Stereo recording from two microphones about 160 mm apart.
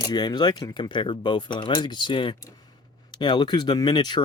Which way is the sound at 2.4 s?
25° left (ahead or behind).